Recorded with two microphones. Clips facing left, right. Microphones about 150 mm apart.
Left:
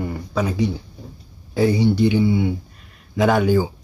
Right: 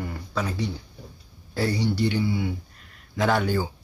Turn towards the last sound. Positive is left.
turn(degrees=15)  # may be behind; listen again after turning